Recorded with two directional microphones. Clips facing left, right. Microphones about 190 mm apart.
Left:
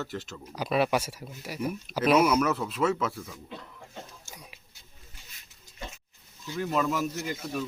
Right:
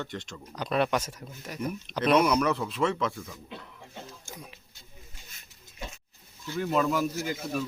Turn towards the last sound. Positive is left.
turn(degrees=0)  # may be behind; listen again after turning